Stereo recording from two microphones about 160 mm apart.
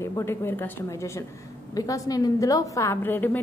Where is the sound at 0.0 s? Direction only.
15° left (ahead or behind).